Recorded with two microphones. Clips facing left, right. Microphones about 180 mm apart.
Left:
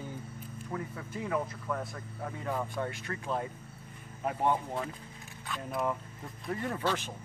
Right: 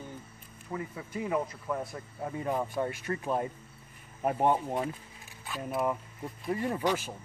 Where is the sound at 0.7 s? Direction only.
5° right (ahead or behind); by 3.2 s 25° right (ahead or behind).